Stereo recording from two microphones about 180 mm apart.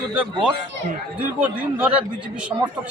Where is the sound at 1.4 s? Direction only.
10° right (ahead or behind).